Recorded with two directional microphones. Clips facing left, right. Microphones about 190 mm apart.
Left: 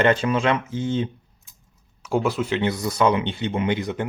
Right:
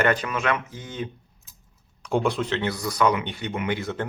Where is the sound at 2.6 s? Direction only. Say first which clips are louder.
Left 3 dB; 20° left (ahead or behind).